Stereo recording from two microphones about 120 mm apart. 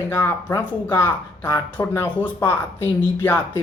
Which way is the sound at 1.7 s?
20° left (ahead or behind).